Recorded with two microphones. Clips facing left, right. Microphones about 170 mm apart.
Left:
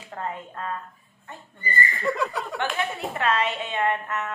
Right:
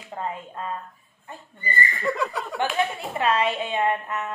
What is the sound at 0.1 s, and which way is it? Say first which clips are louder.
Speech: right 1 dB; 20° right (ahead or behind).